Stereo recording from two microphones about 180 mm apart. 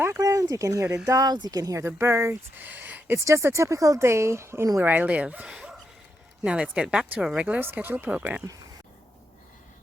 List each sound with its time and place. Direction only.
0.0 s speech: 15° right (ahead or behind)